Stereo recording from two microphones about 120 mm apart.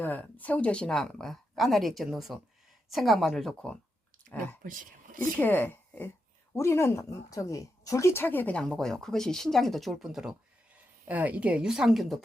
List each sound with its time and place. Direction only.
0.0 s a woman's voice: 15° left (ahead or behind)